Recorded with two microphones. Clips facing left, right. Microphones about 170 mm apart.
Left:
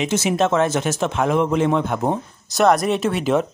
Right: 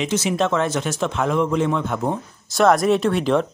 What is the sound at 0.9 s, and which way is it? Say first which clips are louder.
A man's voice: even; 20° left (ahead or behind).